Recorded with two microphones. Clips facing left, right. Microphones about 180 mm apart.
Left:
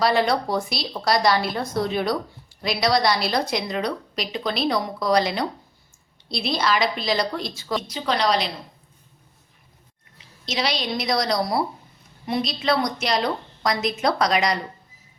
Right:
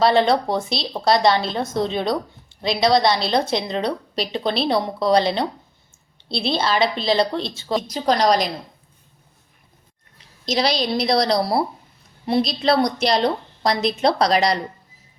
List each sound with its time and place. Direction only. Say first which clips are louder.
0.0 s a woman's voice: right 4 dB; 25° right (ahead or behind)
7.8 s a woman's voice: right 5 dB; 40° right (ahead or behind)
10.4 s a woman's voice: right 5 dB; 35° right (ahead or behind)